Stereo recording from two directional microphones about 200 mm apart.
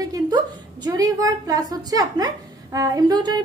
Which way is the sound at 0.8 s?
20° right (ahead or behind).